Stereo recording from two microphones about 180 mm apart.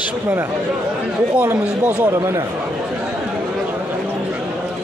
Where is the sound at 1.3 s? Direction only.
5° right (ahead or behind).